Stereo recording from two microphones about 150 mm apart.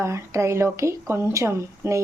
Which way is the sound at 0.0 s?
20° right (ahead or behind).